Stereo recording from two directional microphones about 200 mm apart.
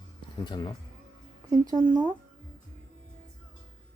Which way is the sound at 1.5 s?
20° right (ahead or behind).